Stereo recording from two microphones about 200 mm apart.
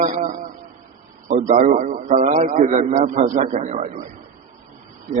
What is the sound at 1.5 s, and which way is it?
A man's voice, 35° right (ahead or behind).